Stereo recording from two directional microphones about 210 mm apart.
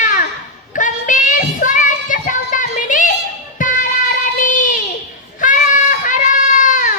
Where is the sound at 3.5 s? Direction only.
40° left (ahead or behind).